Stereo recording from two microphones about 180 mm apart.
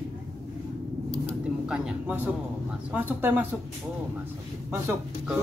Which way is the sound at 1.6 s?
5° right (ahead or behind).